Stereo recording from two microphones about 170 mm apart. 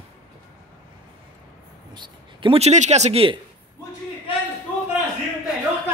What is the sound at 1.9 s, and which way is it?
Speech, 30° right (ahead or behind).